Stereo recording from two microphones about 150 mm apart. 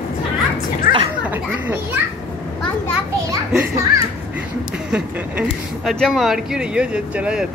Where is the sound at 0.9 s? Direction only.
65° left (ahead or behind).